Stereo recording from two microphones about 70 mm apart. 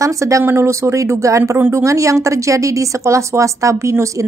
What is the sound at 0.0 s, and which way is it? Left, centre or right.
A woman's voice, right.